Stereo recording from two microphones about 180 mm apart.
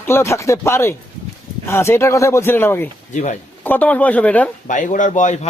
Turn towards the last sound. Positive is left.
turn(degrees=40)  # may be behind; listen again after turning